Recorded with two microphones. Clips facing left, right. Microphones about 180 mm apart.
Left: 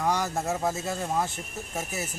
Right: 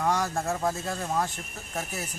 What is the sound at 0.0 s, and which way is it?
Speech, 5° left (ahead or behind).